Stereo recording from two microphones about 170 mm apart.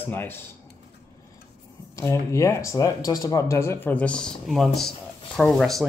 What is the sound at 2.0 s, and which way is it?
Speech, 15° left (ahead or behind).